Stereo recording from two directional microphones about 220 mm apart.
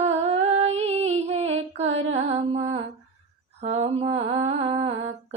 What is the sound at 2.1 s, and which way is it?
Mantra, 30° right (ahead or behind).